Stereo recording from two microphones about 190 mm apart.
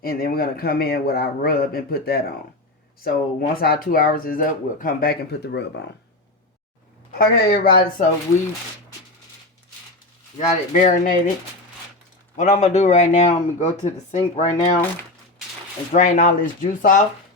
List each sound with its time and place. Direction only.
0.0 s speech: 50° left (ahead or behind)
7.2 s speech: 55° left (ahead or behind)
10.3 s speech: 40° left (ahead or behind)
12.4 s speech: 35° left (ahead or behind)
15.9 s speech: 40° left (ahead or behind)